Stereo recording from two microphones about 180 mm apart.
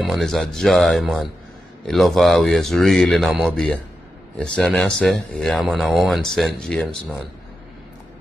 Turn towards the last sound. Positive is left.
turn(degrees=0)  # may be behind; listen again after turning